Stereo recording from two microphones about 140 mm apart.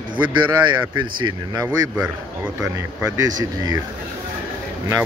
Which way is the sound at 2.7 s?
25° right (ahead or behind).